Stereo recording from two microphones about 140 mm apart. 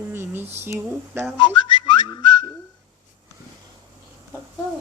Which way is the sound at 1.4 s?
35° left (ahead or behind).